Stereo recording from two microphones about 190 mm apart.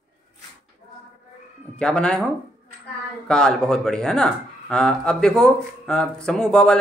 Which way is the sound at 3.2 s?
5° left (ahead or behind).